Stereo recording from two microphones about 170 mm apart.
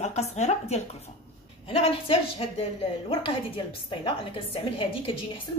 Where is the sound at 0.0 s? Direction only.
40° left (ahead or behind).